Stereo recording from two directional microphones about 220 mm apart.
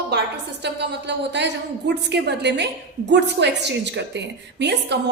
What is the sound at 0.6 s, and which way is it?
A woman's voice, 50° right (ahead or behind).